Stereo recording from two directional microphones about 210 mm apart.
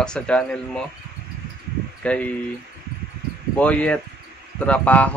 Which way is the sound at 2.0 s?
5° left (ahead or behind).